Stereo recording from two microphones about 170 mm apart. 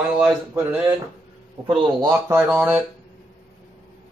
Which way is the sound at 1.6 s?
30° right (ahead or behind).